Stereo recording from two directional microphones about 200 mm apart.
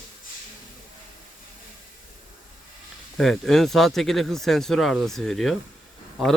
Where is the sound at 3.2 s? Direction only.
Centre (ahead or behind).